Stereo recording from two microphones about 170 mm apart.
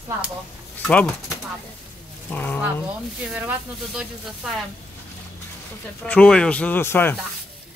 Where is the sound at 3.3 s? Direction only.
5° right (ahead or behind).